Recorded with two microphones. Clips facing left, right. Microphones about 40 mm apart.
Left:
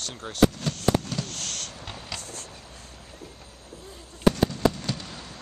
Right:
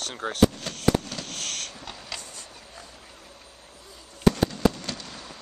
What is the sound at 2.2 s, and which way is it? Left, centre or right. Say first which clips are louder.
Vehicle: left 3 dB; left.